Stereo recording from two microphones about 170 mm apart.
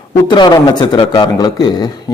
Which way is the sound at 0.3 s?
25° left (ahead or behind).